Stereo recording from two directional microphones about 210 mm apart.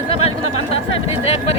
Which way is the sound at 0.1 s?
30° left (ahead or behind).